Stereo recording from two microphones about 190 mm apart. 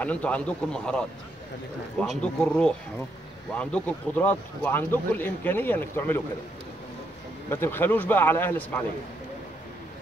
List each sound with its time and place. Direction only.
0.0 s speech: 5° left (ahead or behind)
7.4 s speech: 10° left (ahead or behind)